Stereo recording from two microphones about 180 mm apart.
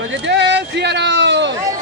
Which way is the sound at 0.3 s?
75° right (ahead or behind).